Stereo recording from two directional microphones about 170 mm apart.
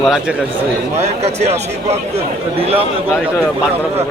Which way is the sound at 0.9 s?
40° right (ahead or behind).